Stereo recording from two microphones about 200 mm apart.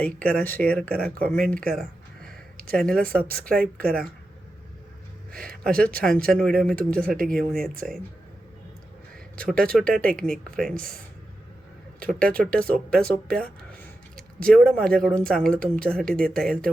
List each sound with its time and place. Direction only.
0.0 s speech: 5° left (ahead or behind)
2.6 s a sound: 45° right (ahead or behind)
2.8 s speech: 5° left (ahead or behind)
5.6 s speech: 5° left (ahead or behind)
7.2 s speech: 45° right (ahead or behind)
7.5 s speech: centre (ahead or behind)
9.4 s speech: 5° left (ahead or behind)
11.9 s speech: 5° left (ahead or behind)
14.4 s speech: 5° left (ahead or behind)